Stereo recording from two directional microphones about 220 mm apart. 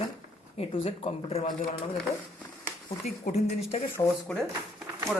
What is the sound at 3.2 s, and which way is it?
Speech, 30° left (ahead or behind).